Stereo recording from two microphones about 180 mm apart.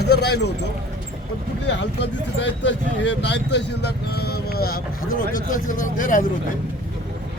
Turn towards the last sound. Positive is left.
turn(degrees=45)  # may be behind; listen again after turning